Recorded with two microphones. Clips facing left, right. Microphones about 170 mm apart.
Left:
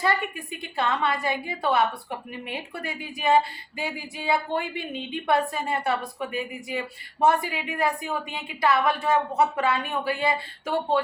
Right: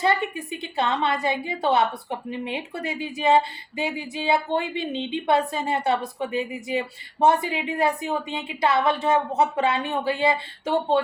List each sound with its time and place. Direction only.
0.0 s a woman's voice: 25° right (ahead or behind)